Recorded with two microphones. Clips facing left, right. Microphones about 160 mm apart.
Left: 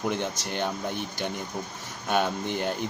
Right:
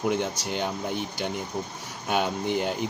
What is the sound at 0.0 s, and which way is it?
Speech, 10° right (ahead or behind).